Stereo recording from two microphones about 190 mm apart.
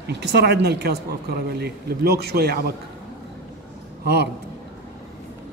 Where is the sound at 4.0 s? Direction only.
60° right (ahead or behind).